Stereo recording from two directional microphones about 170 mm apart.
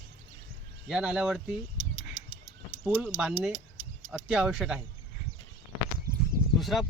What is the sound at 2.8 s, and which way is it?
Speech, 10° right (ahead or behind).